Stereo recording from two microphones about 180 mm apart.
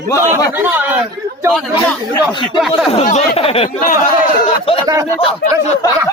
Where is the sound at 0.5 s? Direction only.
10° right (ahead or behind).